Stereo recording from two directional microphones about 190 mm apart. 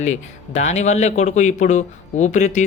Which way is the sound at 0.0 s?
35° left (ahead or behind).